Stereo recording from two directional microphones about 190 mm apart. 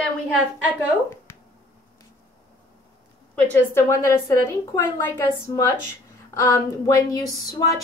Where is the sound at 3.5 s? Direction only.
10° left (ahead or behind).